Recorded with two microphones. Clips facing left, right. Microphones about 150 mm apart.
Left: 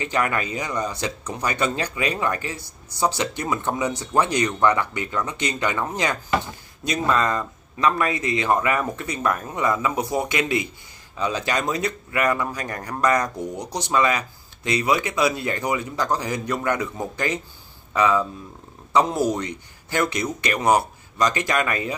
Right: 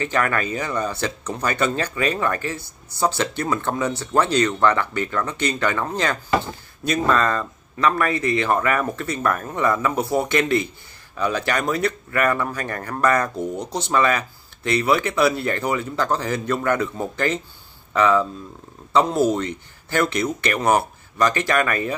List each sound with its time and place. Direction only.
0.0 s speech: 15° left (ahead or behind)